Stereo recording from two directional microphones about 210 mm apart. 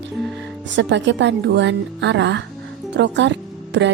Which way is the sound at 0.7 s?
60° right (ahead or behind).